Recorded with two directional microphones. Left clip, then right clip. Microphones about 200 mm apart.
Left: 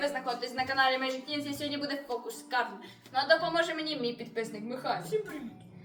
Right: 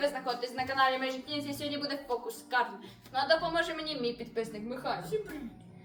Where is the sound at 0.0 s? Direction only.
10° right (ahead or behind).